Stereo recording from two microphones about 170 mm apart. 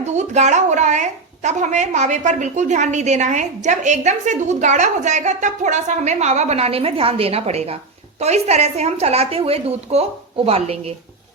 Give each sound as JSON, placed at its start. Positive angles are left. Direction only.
{"t": 0.0, "sound": "a woman's voice", "side_deg": -40}